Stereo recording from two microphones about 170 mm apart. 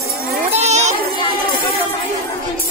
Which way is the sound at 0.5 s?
40° right (ahead or behind).